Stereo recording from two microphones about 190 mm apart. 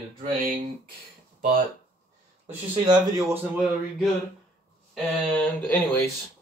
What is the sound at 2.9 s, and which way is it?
Speech, 20° right (ahead or behind).